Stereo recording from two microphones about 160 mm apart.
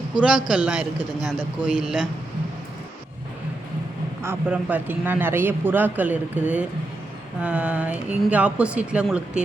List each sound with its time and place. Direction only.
0.2 s a man's voice: 5° right (ahead or behind)
4.2 s a man's voice: 10° right (ahead or behind)